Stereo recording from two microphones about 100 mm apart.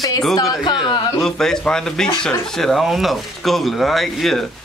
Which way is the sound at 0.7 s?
50° left (ahead or behind).